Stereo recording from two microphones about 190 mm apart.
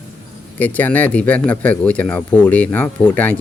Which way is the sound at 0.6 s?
10° left (ahead or behind).